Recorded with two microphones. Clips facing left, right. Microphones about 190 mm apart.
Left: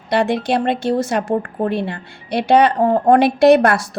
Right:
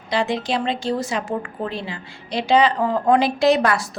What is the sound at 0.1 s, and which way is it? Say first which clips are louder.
A woman's voice: left 5 dB; 60° left (ahead or behind).